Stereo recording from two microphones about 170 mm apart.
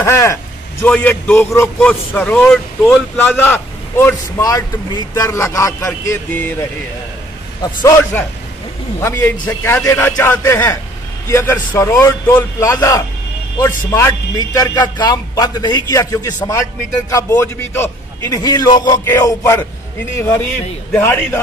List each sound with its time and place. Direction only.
0.0 s a man's voice: 15° left (ahead or behind)
7.6 s a man's voice: 15° left (ahead or behind)